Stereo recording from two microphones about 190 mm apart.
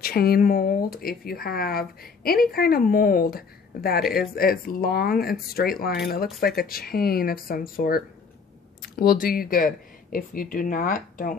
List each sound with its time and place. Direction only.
0.0 s speech: 50° left (ahead or behind)